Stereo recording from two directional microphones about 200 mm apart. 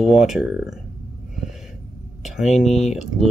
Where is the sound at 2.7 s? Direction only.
35° left (ahead or behind).